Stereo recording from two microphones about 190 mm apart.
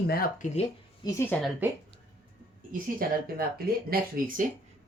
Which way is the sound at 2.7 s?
45° right (ahead or behind).